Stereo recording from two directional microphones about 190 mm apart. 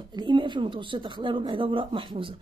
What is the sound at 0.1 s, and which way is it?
Speech, 25° right (ahead or behind).